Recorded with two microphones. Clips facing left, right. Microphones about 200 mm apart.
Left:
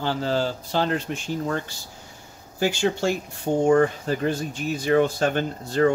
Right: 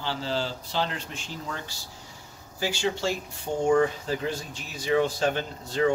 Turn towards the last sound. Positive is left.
turn(degrees=55)  # may be behind; listen again after turning